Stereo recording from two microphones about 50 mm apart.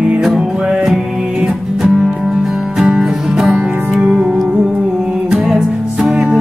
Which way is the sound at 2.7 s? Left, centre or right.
Centre.